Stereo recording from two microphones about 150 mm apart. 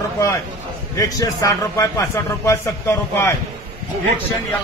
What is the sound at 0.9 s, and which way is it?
A man's voice, 20° left (ahead or behind).